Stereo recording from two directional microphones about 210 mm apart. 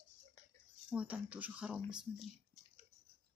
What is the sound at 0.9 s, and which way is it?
Speech, 5° right (ahead or behind).